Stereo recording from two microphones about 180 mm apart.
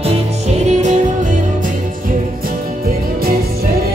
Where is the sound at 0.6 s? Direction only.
40° right (ahead or behind).